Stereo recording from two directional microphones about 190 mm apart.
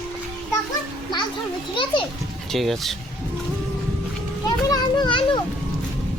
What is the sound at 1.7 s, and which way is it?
Speech, 25° left (ahead or behind).